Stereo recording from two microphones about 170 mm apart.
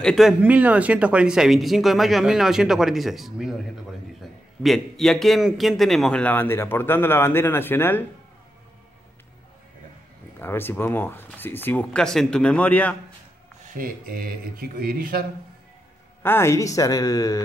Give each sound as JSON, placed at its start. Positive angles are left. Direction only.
{"t": 0.0, "sound": "a man's voice", "side_deg": 0}
{"t": 10.4, "sound": "a man's voice", "side_deg": 15}
{"t": 13.7, "sound": "speech", "side_deg": -60}
{"t": 16.2, "sound": "speech", "side_deg": 15}